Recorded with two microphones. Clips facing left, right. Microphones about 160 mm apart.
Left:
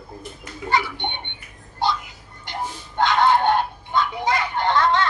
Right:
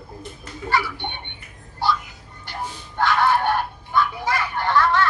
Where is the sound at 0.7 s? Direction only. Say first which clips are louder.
Left 1 dB; 20° left (ahead or behind).